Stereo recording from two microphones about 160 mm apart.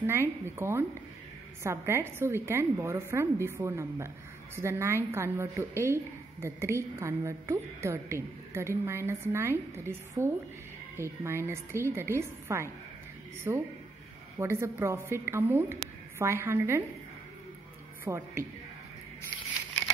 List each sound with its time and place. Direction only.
0.0 s a woman's voice: 15° right (ahead or behind)
18.0 s a woman's voice: 15° right (ahead or behind)